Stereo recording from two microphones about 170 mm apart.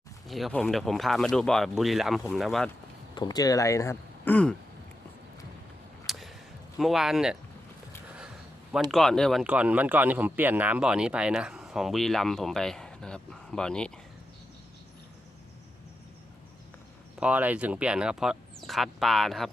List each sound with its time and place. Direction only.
0.3 s speech: centre (ahead or behind)
3.2 s speech: 20° left (ahead or behind)
6.1 s a sound: centre (ahead or behind)
6.7 s speech: centre (ahead or behind)
8.9 s speech: centre (ahead or behind)
17.2 s speech: 10° right (ahead or behind)